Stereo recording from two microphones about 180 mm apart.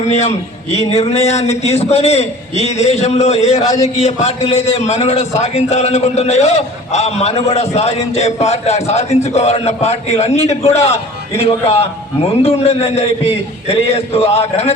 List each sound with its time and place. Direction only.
0.1 s a man's voice: 40° left (ahead or behind)